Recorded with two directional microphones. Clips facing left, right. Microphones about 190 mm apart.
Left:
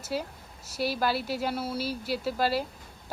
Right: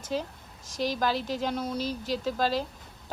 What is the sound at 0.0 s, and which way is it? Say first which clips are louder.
Speech: right 1 dB; 10° left (ahead or behind).